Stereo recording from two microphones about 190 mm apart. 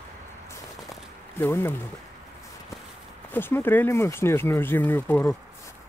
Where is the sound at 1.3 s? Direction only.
10° left (ahead or behind).